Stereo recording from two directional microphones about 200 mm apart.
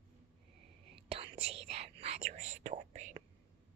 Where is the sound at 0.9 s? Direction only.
30° right (ahead or behind).